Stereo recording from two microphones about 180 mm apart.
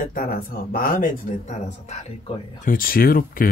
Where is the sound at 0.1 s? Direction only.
55° left (ahead or behind).